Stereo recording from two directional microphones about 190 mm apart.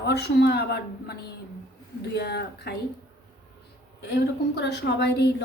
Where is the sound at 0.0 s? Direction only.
60° left (ahead or behind).